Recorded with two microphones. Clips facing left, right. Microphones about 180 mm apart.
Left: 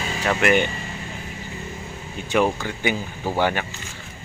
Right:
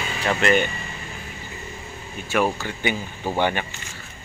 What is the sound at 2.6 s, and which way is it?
Speech, 10° left (ahead or behind).